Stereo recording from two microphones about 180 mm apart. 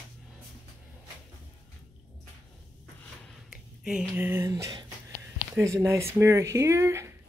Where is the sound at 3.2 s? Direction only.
Centre (ahead or behind); by 4.8 s 20° right (ahead or behind).